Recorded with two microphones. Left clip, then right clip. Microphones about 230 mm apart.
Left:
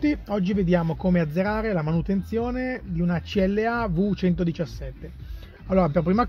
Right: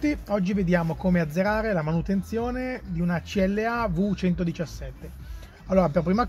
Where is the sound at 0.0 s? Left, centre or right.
Left.